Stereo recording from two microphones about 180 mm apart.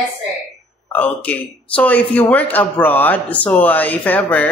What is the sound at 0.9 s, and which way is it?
A man's voice, 10° left (ahead or behind).